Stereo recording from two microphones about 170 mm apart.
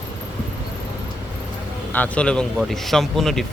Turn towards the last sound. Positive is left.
turn(degrees=0)  # may be behind; listen again after turning